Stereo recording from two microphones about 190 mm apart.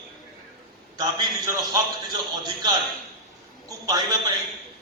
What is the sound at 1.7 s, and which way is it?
A man's voice, 20° right (ahead or behind).